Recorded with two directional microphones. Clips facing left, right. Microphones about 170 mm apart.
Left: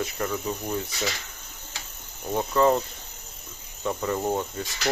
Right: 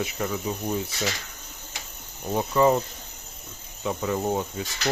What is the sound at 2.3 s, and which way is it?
Speech, 10° right (ahead or behind).